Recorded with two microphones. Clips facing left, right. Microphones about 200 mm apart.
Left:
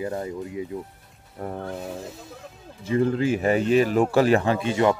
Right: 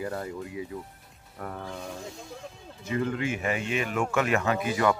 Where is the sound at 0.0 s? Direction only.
20° left (ahead or behind).